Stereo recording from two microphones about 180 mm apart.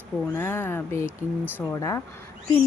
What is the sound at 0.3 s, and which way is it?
Speech, 10° left (ahead or behind).